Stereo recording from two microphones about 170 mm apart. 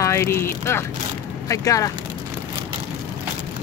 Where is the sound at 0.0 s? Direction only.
15° left (ahead or behind).